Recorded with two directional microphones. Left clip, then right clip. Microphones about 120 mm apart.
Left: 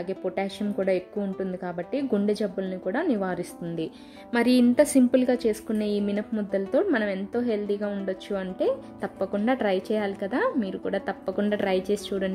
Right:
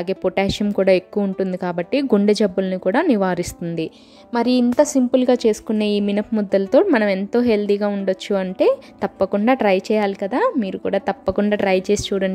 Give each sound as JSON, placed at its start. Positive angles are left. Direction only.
{"t": 0.0, "sound": "a woman's voice", "side_deg": -50}
{"t": 4.3, "sound": "a woman's voice", "side_deg": -20}
{"t": 5.1, "sound": "a woman's voice", "side_deg": -35}
{"t": 6.1, "sound": "a woman's voice", "side_deg": -55}